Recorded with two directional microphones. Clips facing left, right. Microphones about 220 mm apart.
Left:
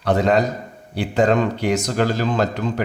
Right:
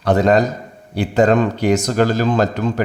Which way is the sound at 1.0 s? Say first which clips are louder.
Right 3 dB; 40° right (ahead or behind).